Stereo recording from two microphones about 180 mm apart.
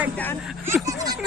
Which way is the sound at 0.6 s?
20° right (ahead or behind).